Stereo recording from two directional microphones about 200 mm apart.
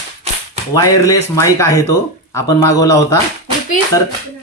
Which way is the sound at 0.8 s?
15° left (ahead or behind).